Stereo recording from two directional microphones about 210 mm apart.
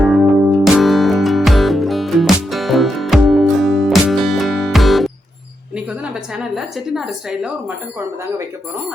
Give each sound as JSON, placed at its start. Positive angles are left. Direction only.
{"t": 0.0, "sound": "music", "side_deg": 0}
{"t": 5.7, "sound": "a woman's voice", "side_deg": -5}